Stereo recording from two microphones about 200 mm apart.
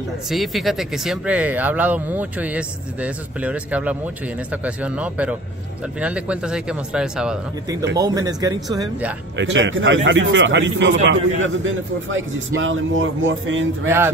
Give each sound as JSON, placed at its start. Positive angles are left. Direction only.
{"t": 0.3, "sound": "speech", "side_deg": 0}
{"t": 8.0, "sound": "a man's voice", "side_deg": -20}
{"t": 9.4, "sound": "a man's voice", "side_deg": -70}
{"t": 13.8, "sound": "speech", "side_deg": -10}